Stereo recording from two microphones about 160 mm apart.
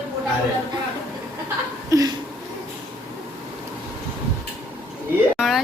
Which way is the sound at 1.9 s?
20° right (ahead or behind).